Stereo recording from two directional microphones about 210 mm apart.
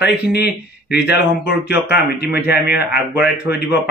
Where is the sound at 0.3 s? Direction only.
50° left (ahead or behind).